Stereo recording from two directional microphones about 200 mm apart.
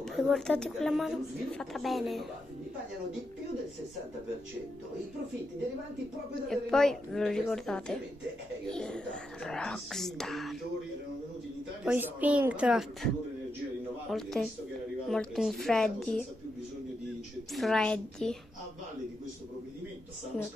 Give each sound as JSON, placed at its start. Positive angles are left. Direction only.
{"t": 0.1, "sound": "speech", "side_deg": 0}
{"t": 6.5, "sound": "speech", "side_deg": 0}
{"t": 11.8, "sound": "a woman's voice", "side_deg": -10}
{"t": 14.1, "sound": "speech", "side_deg": 0}
{"t": 17.6, "sound": "speech", "side_deg": 0}